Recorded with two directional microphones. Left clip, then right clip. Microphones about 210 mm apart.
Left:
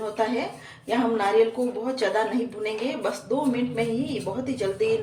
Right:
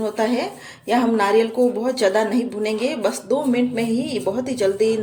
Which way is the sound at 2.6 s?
55° right (ahead or behind).